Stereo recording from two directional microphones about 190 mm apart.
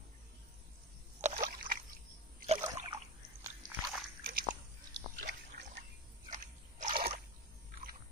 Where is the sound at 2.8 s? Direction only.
35° right (ahead or behind).